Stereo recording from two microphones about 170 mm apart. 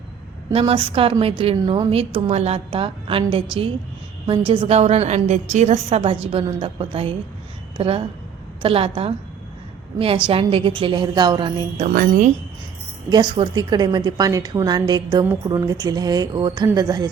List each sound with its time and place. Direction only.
0.5 s a woman's voice: 30° right (ahead or behind)
10.2 s a woman's voice: 30° right (ahead or behind)
11.9 s speech: 50° right (ahead or behind)
13.1 s a woman's voice: 25° right (ahead or behind)